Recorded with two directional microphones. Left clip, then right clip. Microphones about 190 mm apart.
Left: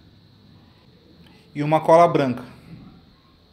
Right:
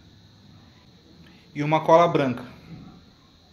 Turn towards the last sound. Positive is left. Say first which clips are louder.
# left 4 dB
turn(degrees=20)  # may be behind; listen again after turning